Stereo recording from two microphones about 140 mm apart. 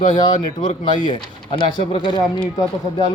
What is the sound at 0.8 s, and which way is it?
Speech, 35° left (ahead or behind).